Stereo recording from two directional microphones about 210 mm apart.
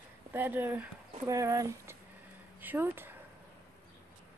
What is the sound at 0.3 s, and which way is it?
Speech, 10° right (ahead or behind).